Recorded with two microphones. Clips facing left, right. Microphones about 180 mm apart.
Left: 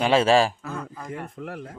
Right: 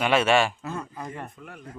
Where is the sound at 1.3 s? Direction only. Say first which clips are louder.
Left 8 dB; 70° left (ahead or behind).